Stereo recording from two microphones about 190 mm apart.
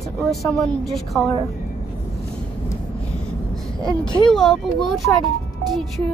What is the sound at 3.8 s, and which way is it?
Speech, 25° left (ahead or behind).